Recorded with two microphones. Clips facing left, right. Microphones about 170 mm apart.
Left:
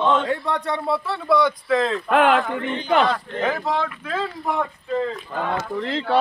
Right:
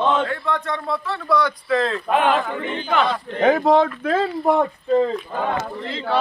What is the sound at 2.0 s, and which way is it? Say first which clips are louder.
Speech: left 3 dB; 75° left (ahead or behind).